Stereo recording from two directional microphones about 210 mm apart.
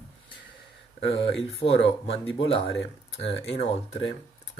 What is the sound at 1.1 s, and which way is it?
Speech, 30° left (ahead or behind).